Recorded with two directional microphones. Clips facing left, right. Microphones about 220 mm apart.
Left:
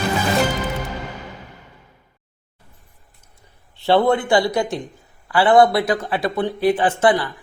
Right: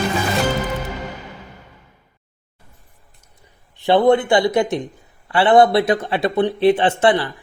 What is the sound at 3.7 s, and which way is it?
Speech, 15° right (ahead or behind).